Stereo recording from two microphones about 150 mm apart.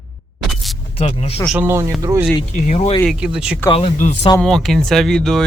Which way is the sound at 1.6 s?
15° right (ahead or behind).